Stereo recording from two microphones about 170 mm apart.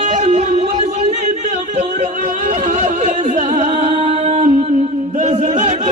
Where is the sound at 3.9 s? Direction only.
40° right (ahead or behind).